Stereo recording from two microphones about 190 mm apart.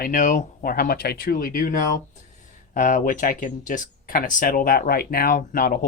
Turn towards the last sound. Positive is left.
turn(degrees=50)  # may be behind; listen again after turning